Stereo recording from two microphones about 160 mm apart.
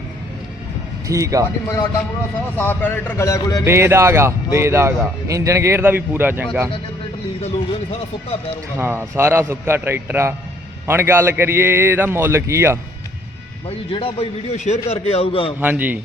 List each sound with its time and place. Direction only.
1.0 s speech: 20° right (ahead or behind)
2.6 s a man's voice: 10° left (ahead or behind)
3.6 s a man's voice: 15° right (ahead or behind)
7.4 s a man's voice: 40° left (ahead or behind)
8.8 s a man's voice: 15° right (ahead or behind)
13.7 s a man's voice: 35° left (ahead or behind)
15.6 s a man's voice: 10° right (ahead or behind)